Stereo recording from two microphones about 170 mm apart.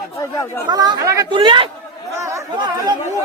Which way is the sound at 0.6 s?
25° right (ahead or behind).